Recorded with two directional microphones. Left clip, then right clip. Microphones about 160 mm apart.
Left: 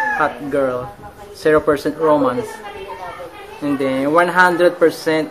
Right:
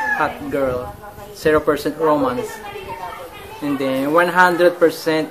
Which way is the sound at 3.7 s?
5° left (ahead or behind).